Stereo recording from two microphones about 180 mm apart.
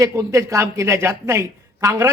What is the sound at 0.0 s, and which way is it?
A woman's voice, 15° right (ahead or behind).